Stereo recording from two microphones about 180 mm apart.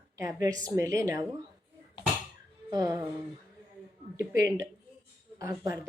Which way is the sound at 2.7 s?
20° right (ahead or behind).